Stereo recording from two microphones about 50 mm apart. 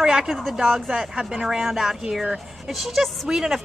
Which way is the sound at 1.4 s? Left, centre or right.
Centre.